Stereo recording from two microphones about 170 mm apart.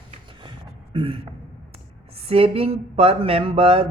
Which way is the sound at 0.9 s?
30° right (ahead or behind).